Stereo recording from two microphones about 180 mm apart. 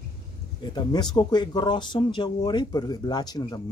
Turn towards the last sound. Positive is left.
turn(degrees=20)  # may be behind; listen again after turning